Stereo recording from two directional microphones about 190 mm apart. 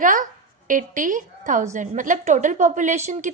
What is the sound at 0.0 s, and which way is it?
A woman's voice, 45° right (ahead or behind).